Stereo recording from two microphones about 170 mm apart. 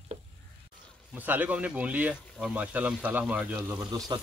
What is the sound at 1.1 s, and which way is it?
Speech, 10° right (ahead or behind).